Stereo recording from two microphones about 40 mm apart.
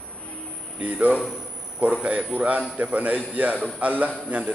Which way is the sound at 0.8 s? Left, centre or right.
Right.